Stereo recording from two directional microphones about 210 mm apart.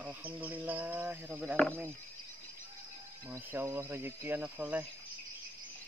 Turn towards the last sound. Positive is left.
turn(degrees=-5)  # may be behind; listen again after turning